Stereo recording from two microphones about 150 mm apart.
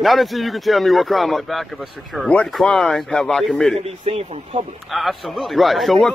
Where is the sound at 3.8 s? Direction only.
40° right (ahead or behind).